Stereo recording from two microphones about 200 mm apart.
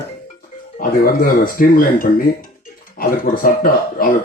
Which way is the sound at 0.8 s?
45° left (ahead or behind).